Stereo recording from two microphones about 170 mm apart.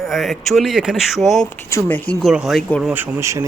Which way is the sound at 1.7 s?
15° left (ahead or behind).